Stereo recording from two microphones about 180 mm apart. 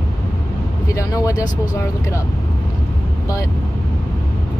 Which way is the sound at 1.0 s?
20° left (ahead or behind).